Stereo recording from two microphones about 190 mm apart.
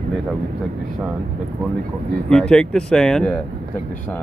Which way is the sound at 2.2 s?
5° left (ahead or behind).